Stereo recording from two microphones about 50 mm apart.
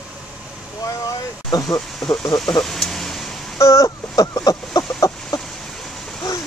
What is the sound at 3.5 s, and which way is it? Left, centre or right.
Speech, left.